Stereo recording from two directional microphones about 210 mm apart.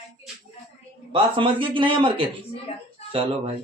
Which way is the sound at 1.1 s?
25° right (ahead or behind).